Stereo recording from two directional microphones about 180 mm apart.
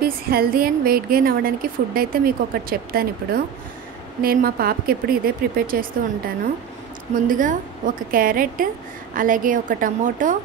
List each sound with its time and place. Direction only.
0.0 s a woman's voice: 55° right (ahead or behind)
4.2 s a woman's voice: 55° right (ahead or behind)